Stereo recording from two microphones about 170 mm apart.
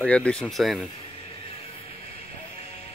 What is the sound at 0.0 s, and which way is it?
Speech, 5° left (ahead or behind).